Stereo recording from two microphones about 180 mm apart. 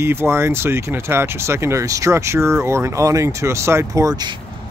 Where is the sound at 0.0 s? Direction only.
15° right (ahead or behind).